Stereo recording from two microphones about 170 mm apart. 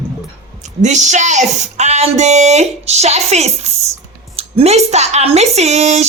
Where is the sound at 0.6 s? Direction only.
45° right (ahead or behind).